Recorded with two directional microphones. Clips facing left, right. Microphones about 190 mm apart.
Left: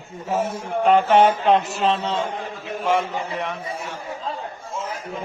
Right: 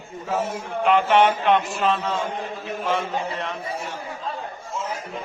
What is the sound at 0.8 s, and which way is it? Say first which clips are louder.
A man's voice: left 2 dB; 40° left (ahead or behind).